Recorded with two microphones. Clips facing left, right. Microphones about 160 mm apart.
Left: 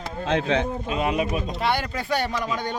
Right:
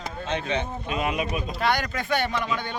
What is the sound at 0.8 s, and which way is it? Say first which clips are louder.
Speech: left 3 dB; 30° left (ahead or behind).